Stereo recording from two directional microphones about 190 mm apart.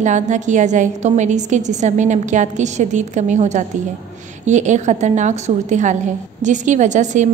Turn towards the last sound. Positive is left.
turn(degrees=-40)  # may be behind; listen again after turning